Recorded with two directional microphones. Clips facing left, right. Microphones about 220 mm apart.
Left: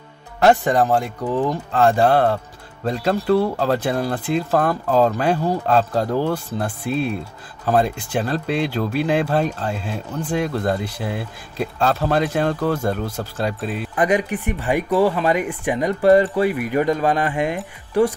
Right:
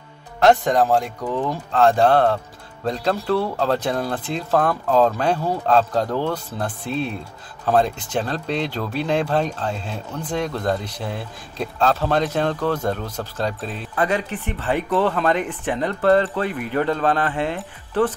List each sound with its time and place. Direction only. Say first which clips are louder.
0.4 s speech: even; 5° left (ahead or behind)